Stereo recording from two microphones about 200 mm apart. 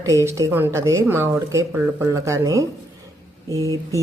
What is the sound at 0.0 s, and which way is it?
Speech, 15° right (ahead or behind).